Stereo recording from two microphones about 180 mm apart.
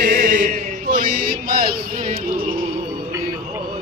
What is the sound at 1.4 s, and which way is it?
Music, 50° right (ahead or behind).